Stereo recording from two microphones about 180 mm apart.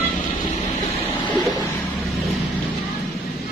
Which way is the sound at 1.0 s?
25° left (ahead or behind).